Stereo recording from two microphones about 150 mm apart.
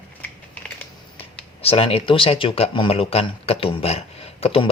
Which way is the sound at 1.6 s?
40° left (ahead or behind).